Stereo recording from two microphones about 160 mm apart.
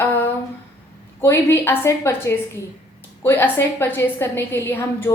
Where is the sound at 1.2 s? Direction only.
15° left (ahead or behind).